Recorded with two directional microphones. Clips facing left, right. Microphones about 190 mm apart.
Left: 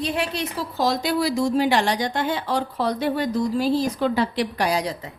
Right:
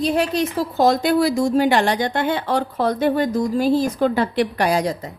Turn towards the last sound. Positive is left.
turn(degrees=-45)  # may be behind; listen again after turning